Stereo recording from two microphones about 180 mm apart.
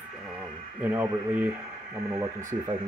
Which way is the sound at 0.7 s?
10° right (ahead or behind).